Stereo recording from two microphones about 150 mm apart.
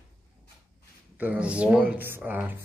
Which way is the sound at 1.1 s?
10° right (ahead or behind).